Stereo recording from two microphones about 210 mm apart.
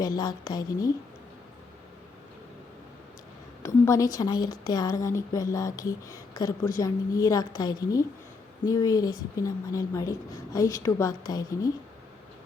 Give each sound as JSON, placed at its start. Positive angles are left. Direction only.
{"t": 0.0, "sound": "a woman's voice", "side_deg": 20}
{"t": 3.6, "sound": "a woman's voice", "side_deg": 15}